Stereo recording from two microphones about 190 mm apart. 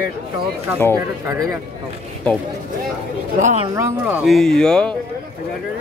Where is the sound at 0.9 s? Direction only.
20° right (ahead or behind).